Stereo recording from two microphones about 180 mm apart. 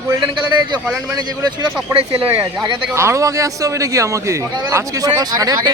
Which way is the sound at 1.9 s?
30° right (ahead or behind).